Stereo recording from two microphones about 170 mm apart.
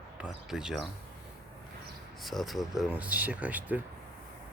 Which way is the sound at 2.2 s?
Centre (ahead or behind).